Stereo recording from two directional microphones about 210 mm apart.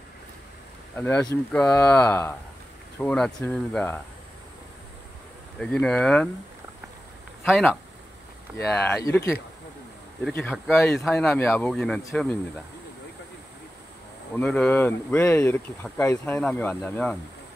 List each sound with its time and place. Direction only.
0.9 s speech: 10° left (ahead or behind)
5.6 s speech: 5° left (ahead or behind)
7.4 s speech: centre (ahead or behind)
10.2 s speech: centre (ahead or behind)
14.3 s speech: 5° left (ahead or behind)